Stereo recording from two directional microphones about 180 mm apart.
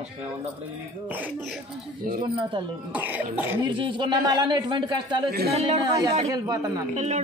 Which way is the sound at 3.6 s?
25° right (ahead or behind).